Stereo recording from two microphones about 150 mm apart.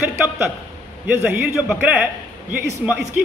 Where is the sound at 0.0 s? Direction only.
15° right (ahead or behind).